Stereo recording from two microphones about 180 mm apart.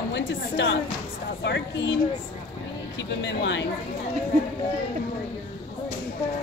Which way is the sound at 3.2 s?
75° left (ahead or behind).